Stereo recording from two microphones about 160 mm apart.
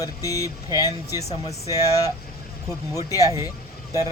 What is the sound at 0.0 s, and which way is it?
Speech, 20° left (ahead or behind).